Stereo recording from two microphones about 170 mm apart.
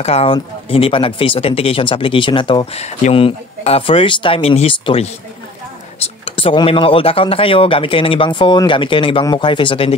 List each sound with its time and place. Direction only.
0.0 s speech: 35° left (ahead or behind)